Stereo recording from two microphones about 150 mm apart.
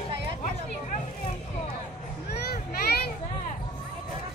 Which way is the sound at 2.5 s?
90° left.